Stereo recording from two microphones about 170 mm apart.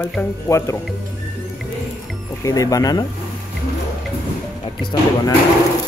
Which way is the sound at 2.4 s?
20° left (ahead or behind).